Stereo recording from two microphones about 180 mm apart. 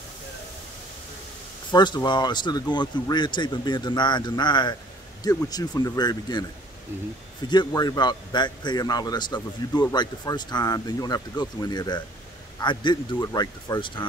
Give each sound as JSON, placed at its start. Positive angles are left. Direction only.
{"t": 1.7, "sound": "speech", "side_deg": 25}
{"t": 7.4, "sound": "speech", "side_deg": 25}